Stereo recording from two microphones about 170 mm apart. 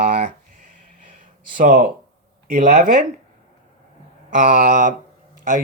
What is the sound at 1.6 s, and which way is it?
Speech, 50° right (ahead or behind).